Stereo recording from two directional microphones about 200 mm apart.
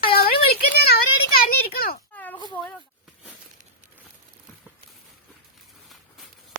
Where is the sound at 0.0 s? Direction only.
50° left (ahead or behind).